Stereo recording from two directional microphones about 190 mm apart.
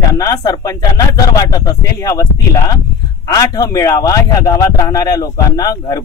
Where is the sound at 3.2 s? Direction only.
20° left (ahead or behind).